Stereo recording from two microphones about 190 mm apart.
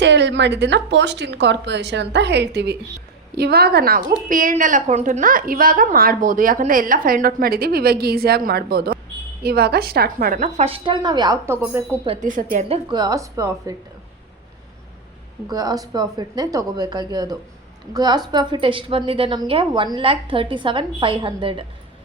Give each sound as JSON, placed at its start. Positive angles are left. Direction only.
{"t": 0.0, "sound": "a woman's voice", "side_deg": -70}
{"t": 12.0, "sound": "a woman's voice", "side_deg": -35}
{"t": 12.6, "sound": "a woman's voice", "side_deg": -25}
{"t": 15.4, "sound": "a woman's voice", "side_deg": -20}